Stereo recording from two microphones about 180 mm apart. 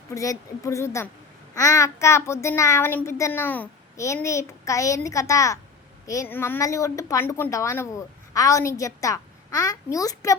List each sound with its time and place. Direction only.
0.1 s a woman's voice: 20° left (ahead or behind)